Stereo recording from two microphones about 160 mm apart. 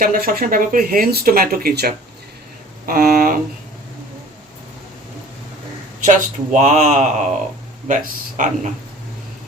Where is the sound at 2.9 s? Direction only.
65° right (ahead or behind).